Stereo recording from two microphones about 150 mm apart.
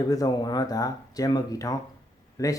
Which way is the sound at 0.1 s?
25° left (ahead or behind).